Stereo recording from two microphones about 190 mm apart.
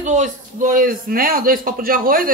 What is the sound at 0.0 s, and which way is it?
A woman's voice, 40° right (ahead or behind).